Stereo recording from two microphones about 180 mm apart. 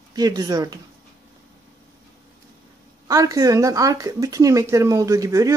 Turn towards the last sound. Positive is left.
turn(degrees=-20)  # may be behind; listen again after turning